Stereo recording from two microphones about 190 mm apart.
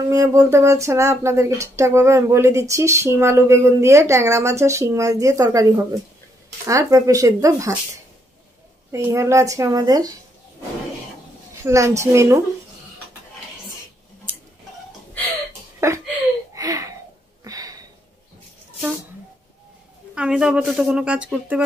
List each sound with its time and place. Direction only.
0.1 s speech: 15° right (ahead or behind)
8.9 s speech: 15° right (ahead or behind)
11.6 s speech: 15° right (ahead or behind)
15.8 s speech: 15° right (ahead or behind)
16.5 s a sound: 15° right (ahead or behind)
20.2 s speech: 5° right (ahead or behind)